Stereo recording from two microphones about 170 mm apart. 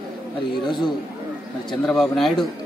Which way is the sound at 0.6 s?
25° left (ahead or behind).